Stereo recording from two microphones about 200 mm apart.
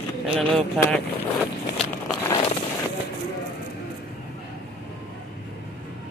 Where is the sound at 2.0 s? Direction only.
20° left (ahead or behind).